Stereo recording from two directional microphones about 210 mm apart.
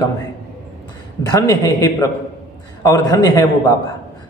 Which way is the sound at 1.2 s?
15° left (ahead or behind).